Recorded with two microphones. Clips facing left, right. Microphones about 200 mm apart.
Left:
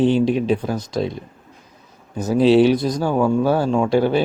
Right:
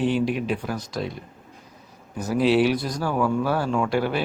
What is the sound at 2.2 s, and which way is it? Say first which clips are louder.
A man's voice: left 6 dB; 25° left (ahead or behind).